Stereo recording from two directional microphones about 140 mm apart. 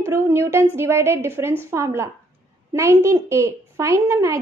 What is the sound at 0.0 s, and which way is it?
A woman's voice, 20° right (ahead or behind).